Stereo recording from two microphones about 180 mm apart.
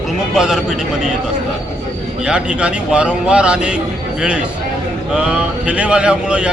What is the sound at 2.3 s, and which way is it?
Speech, 5° right (ahead or behind).